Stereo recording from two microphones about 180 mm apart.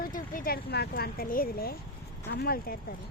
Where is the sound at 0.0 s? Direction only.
50° left (ahead or behind).